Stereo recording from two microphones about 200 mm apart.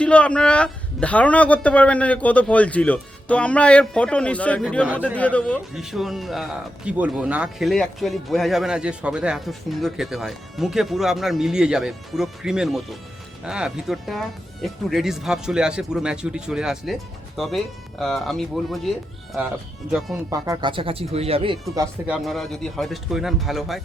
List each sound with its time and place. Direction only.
0.0 s a man's voice: 5° left (ahead or behind)
19.9 s a man's voice: centre (ahead or behind)
20.3 s speech: 15° right (ahead or behind)
21.8 s a man's voice: 5° right (ahead or behind)